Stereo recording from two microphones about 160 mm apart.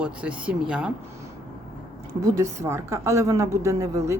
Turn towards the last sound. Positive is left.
turn(degrees=-20)  # may be behind; listen again after turning